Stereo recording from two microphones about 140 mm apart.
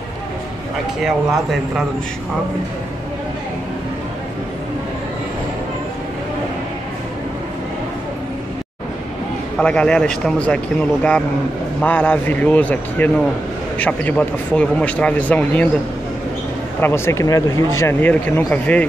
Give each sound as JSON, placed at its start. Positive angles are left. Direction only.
{"t": 9.6, "sound": "speech", "side_deg": 5}
{"t": 16.8, "sound": "speech", "side_deg": 15}